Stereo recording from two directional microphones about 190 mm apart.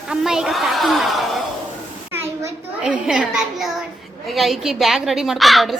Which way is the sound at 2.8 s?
5° right (ahead or behind).